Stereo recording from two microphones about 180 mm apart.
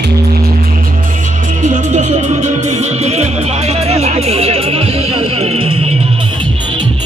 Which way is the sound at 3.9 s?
35° right (ahead or behind).